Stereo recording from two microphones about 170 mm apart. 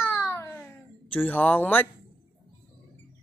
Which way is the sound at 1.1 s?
10° left (ahead or behind).